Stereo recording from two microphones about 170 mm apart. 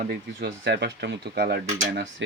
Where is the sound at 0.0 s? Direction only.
65° right (ahead or behind).